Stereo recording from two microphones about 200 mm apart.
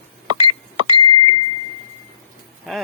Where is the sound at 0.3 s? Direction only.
25° right (ahead or behind).